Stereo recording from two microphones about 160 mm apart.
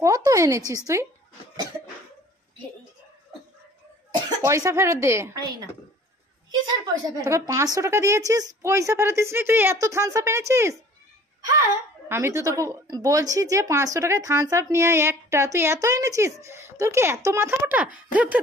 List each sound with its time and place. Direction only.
0.0 s speech: 20° right (ahead or behind)
4.5 s speech: 15° right (ahead or behind)
6.5 s speech: 25° right (ahead or behind)
12.1 s speech: 20° right (ahead or behind)